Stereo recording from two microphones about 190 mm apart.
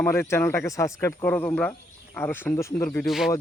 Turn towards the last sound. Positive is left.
turn(degrees=0)  # may be behind; listen again after turning